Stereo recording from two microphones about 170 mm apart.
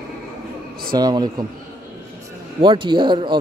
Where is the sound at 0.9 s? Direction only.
25° right (ahead or behind).